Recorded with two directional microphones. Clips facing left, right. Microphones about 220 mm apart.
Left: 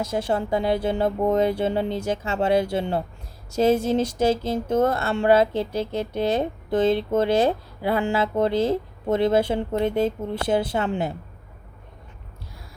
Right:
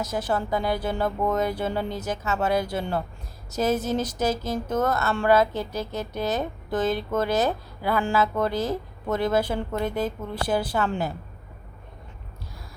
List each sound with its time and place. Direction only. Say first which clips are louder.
0.0 s speech: left 2 dB; 25° left (ahead or behind)